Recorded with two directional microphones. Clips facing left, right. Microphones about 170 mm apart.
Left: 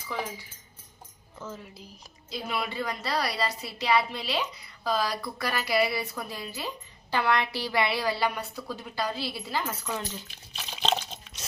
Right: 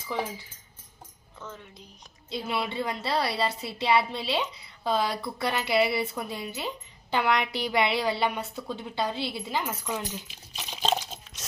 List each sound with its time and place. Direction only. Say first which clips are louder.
0.1 s a woman's voice: right 3 dB; 20° right (ahead or behind)
1.4 s speech: left 3 dB; 5° left (ahead or behind)
2.3 s a woman's voice: right 2 dB; 25° right (ahead or behind)
10.6 s coin: right 1 dB; 10° right (ahead or behind)